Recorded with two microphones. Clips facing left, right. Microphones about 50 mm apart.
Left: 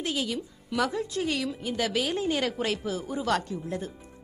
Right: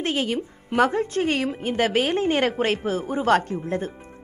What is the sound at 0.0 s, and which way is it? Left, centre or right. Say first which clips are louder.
A woman's voice: right 6 dB; right.